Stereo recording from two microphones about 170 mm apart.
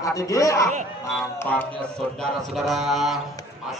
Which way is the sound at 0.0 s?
20° left (ahead or behind).